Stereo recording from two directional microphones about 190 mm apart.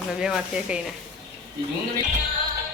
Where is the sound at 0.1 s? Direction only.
5° right (ahead or behind).